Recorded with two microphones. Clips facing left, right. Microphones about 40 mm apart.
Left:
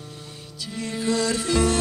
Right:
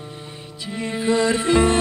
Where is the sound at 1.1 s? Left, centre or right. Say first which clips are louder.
Right 5 dB; right.